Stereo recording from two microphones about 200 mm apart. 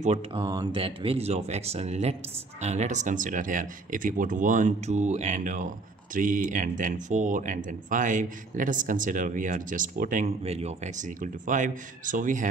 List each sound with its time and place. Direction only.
0.0 s speech: 30° right (ahead or behind)